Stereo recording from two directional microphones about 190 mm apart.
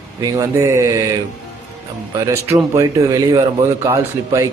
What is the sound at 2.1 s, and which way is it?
A man's voice, 15° right (ahead or behind).